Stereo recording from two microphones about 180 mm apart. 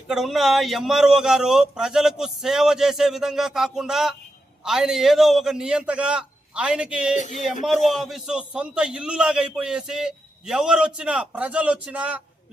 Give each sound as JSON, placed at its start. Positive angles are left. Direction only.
{"t": 0.1, "sound": "a man's voice", "side_deg": 0}
{"t": 7.2, "sound": "speech", "side_deg": 40}
{"t": 7.9, "sound": "a man's voice", "side_deg": 0}